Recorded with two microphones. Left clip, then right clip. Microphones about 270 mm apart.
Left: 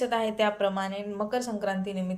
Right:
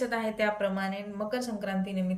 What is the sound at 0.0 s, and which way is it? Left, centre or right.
A woman's voice, centre.